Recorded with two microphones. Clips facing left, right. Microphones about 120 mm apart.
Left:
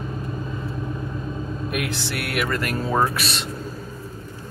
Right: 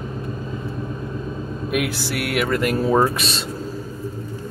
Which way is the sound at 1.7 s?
5° right (ahead or behind).